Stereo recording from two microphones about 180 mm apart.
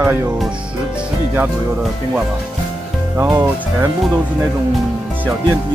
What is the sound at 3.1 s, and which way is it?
Music, 15° right (ahead or behind).